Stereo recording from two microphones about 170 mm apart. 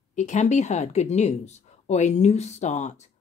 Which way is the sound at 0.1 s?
45° left (ahead or behind).